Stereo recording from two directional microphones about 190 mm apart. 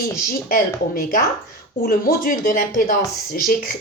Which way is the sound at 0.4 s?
50° left (ahead or behind).